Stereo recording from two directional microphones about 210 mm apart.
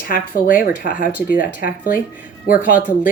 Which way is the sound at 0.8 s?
45° left (ahead or behind).